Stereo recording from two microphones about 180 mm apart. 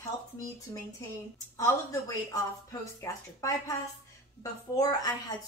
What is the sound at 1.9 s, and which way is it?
Speech, 15° left (ahead or behind).